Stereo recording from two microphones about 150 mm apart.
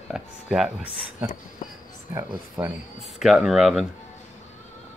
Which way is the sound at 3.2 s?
Centre (ahead or behind).